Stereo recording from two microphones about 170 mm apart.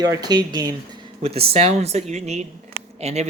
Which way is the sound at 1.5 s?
35° right (ahead or behind).